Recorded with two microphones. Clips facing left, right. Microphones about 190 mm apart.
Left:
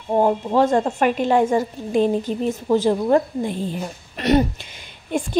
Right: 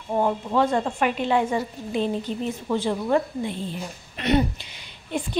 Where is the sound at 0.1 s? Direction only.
40° left (ahead or behind).